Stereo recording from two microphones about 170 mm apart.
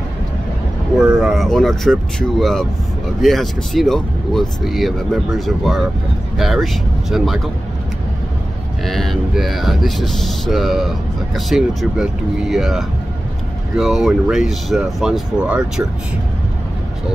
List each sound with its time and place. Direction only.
1.0 s speech: 5° right (ahead or behind)
8.8 s speech: centre (ahead or behind)